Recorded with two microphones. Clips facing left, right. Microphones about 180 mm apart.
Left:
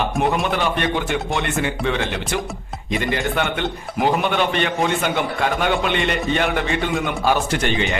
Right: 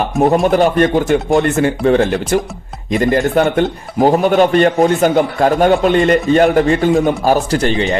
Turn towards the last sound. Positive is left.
turn(degrees=-35)  # may be behind; listen again after turning